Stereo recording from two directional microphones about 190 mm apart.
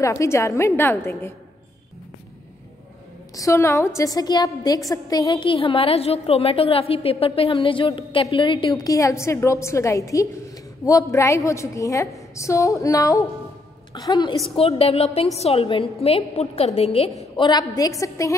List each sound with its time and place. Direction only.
0.0 s a woman's voice: 15° left (ahead or behind)
3.3 s a woman's voice: 15° left (ahead or behind)
14.5 s a woman's voice: 30° left (ahead or behind)
17.4 s a woman's voice: 20° left (ahead or behind)